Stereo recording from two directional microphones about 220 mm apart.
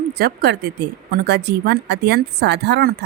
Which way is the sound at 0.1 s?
45° right (ahead or behind).